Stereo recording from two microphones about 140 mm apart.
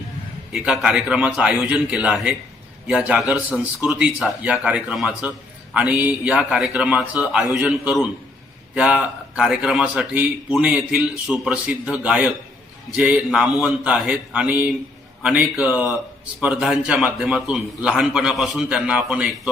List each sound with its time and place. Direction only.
0.5 s a man's voice: 5° right (ahead or behind)